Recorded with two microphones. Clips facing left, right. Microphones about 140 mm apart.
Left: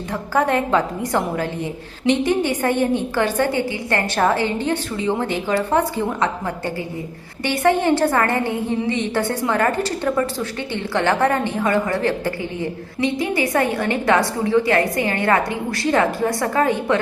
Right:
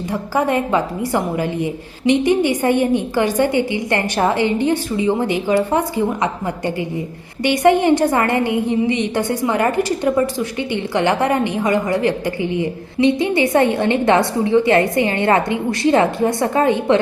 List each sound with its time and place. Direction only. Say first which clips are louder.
0.1 s a woman's voice: right 1 dB; 10° right (ahead or behind)